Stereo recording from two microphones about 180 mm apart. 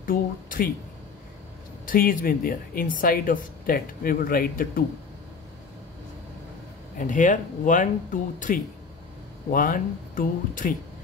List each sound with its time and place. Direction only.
0.0 s a sound: 50° left (ahead or behind)
1.9 s speech: 50° left (ahead or behind)
7.0 s speech: 45° left (ahead or behind)